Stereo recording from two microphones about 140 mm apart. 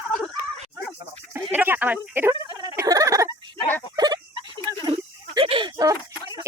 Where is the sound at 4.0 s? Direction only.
30° right (ahead or behind).